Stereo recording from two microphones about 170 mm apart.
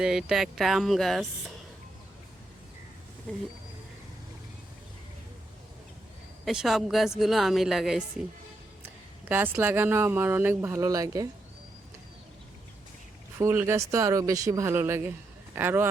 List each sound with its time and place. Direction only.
0.0 s a woman's voice: 5° right (ahead or behind)
6.4 s a woman's voice: centre (ahead or behind)
9.3 s speech: 10° right (ahead or behind)
13.4 s speech: 15° right (ahead or behind)